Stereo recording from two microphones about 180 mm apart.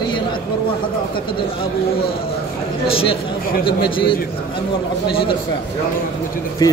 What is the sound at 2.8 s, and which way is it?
A man's voice, 30° left (ahead or behind).